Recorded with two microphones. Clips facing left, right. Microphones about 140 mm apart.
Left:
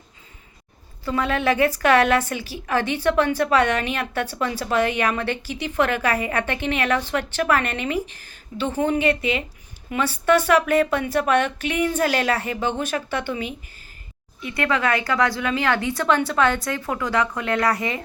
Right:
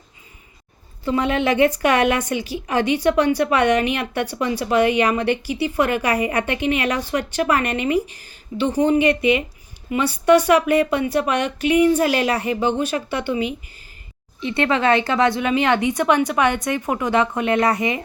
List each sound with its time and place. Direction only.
1.0 s speech: 20° right (ahead or behind)
14.4 s a woman's voice: 25° right (ahead or behind)